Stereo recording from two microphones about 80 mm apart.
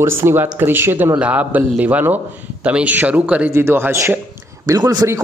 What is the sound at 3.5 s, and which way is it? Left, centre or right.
Speech, right.